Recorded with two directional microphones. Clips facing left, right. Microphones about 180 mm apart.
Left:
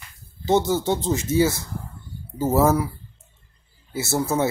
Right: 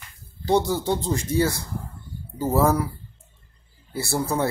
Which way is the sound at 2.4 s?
5° left (ahead or behind).